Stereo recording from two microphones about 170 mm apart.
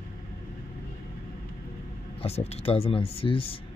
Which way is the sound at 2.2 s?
35° left (ahead or behind).